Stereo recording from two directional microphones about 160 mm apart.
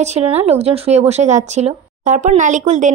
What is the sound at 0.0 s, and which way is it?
Speech, 45° right (ahead or behind).